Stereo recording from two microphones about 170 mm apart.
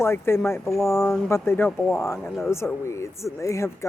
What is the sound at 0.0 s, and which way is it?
Speech, 15° left (ahead or behind).